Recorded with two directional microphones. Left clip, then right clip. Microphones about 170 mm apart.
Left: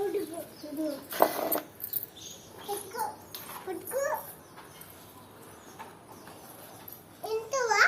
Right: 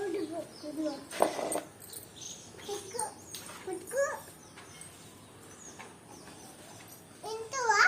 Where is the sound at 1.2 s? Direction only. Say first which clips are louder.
Left 4 dB; 45° left (ahead or behind).